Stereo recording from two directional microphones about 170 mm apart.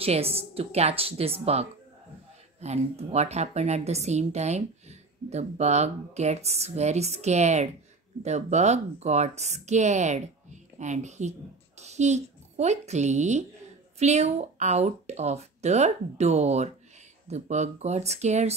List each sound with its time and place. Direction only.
0.0 s a woman's voice: 35° right (ahead or behind)